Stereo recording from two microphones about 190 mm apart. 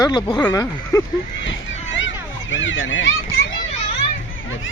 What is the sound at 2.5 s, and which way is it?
Speech, 75° left (ahead or behind).